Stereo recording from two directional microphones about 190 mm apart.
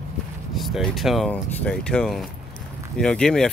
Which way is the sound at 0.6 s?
Centre (ahead or behind).